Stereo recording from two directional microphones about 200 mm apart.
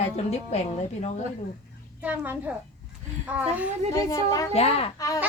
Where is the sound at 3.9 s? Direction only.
15° left (ahead or behind).